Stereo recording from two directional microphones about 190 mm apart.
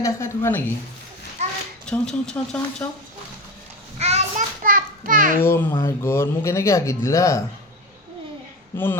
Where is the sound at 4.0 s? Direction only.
35° right (ahead or behind).